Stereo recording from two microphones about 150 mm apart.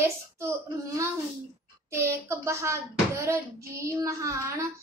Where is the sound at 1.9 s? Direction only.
20° right (ahead or behind).